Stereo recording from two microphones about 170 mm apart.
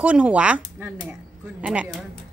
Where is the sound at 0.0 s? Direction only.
10° right (ahead or behind).